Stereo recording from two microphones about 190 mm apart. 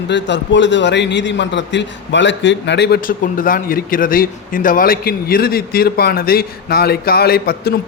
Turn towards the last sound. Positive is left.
turn(degrees=55)  # may be behind; listen again after turning